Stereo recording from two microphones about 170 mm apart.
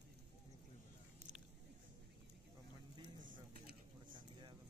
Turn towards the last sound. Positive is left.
turn(degrees=-50)  # may be behind; listen again after turning